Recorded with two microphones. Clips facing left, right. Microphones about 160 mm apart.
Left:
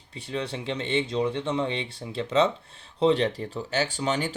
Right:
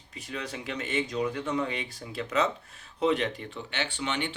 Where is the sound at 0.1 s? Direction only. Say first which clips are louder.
Left 5 dB; 30° left (ahead or behind).